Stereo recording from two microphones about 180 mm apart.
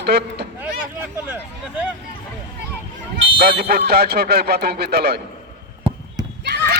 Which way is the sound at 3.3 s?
60° right (ahead or behind).